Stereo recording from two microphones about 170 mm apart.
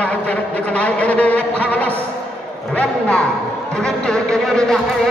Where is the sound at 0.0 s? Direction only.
10° left (ahead or behind).